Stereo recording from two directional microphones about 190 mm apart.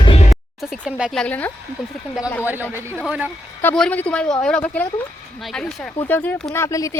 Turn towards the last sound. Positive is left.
turn(degrees=15)  # may be behind; listen again after turning